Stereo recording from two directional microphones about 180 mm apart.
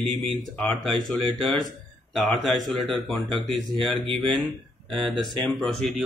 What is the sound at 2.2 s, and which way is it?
Speech, centre (ahead or behind).